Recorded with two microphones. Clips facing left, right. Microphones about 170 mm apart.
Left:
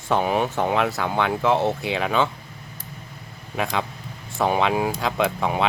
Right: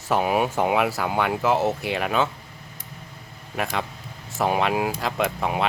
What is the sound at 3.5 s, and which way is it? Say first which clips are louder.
Speech: left 2 dB; centre (ahead or behind).